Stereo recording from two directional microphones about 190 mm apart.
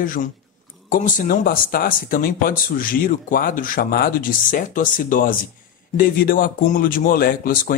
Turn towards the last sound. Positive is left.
turn(degrees=50)  # may be behind; listen again after turning